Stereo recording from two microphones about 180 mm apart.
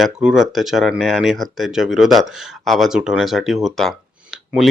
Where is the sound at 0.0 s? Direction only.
5° right (ahead or behind).